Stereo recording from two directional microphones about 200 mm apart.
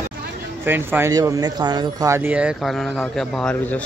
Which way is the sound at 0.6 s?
10° right (ahead or behind).